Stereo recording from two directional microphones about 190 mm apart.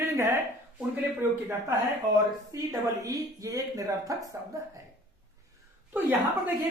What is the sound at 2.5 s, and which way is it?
A woman's voice, 20° right (ahead or behind).